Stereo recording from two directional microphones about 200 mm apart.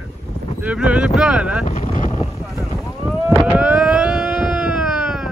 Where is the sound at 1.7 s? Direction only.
35° left (ahead or behind).